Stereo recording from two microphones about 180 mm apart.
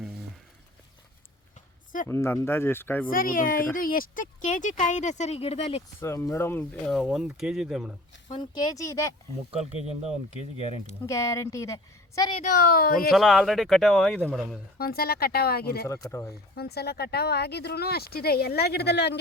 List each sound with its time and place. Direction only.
2.0 s a woman's voice: 15° left (ahead or behind)
3.1 s speech: 50° left (ahead or behind); by 5.8 s 35° left (ahead or behind)
6.0 s a woman's voice: 15° left (ahead or behind)
6.9 s speech: centre (ahead or behind)
8.4 s a woman's voice: 20° left (ahead or behind)
9.8 s speech: 40° right (ahead or behind)
11.0 s a woman's voice: 15° left (ahead or behind)
12.4 s speech: 50° left (ahead or behind)
13.1 s speech: centre (ahead or behind)
14.8 s speech: 60° left (ahead or behind)
15.9 s a woman's voice: 15° left (ahead or behind)
16.6 s speech: 60° left (ahead or behind)